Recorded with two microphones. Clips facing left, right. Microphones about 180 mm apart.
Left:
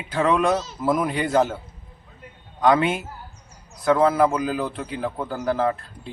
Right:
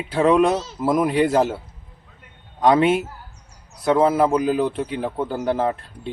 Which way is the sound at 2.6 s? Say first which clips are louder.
Right 3 dB; 30° right (ahead or behind).